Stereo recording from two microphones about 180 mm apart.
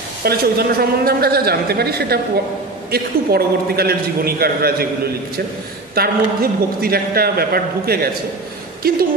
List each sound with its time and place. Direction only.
0.2 s a man's voice: 60° right (ahead or behind)
5.9 s a man's voice: 55° right (ahead or behind)